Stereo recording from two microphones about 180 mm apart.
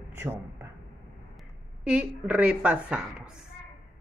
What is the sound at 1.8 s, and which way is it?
A woman's voice, 5° right (ahead or behind).